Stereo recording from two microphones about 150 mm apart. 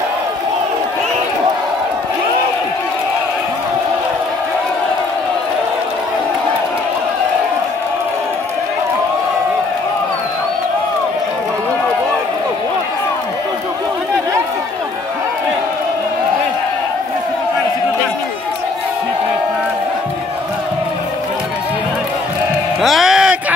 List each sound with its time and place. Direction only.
22.8 s music: centre (ahead or behind)